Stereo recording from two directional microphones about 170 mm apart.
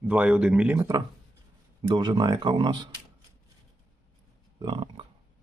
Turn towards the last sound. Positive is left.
turn(degrees=-30)  # may be behind; listen again after turning